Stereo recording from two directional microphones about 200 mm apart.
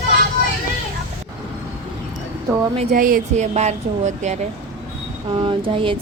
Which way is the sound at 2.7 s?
45° right (ahead or behind).